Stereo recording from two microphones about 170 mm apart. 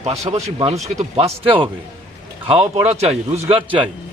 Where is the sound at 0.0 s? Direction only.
35° right (ahead or behind).